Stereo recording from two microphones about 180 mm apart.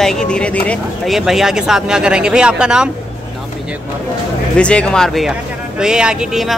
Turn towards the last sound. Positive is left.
turn(degrees=-5)  # may be behind; listen again after turning